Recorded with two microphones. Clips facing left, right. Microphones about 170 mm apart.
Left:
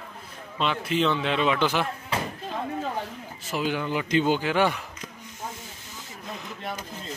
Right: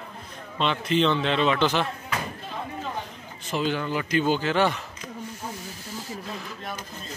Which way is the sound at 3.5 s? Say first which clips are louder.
Right 1 dB; 10° left (ahead or behind).